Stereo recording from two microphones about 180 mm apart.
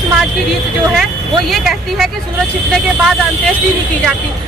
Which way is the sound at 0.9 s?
Centre (ahead or behind).